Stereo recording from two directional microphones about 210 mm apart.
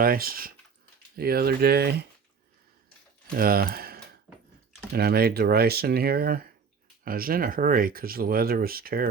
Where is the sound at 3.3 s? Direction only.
45° right (ahead or behind).